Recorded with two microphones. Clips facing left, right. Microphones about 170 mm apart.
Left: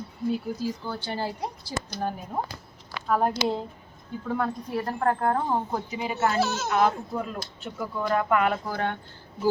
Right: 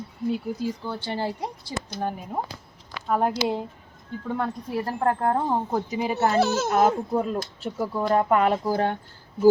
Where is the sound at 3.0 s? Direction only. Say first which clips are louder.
Right 1 dB; 5° right (ahead or behind).